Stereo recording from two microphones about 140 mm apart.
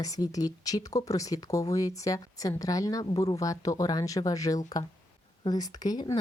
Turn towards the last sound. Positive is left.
turn(degrees=30)  # may be behind; listen again after turning